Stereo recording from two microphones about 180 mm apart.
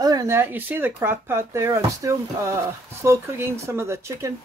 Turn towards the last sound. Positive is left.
turn(degrees=-15)  # may be behind; listen again after turning